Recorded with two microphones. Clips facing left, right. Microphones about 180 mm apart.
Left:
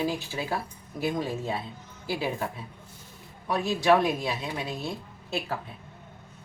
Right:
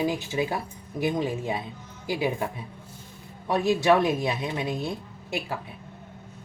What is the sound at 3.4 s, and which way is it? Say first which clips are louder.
Speech: right 3 dB; 20° right (ahead or behind).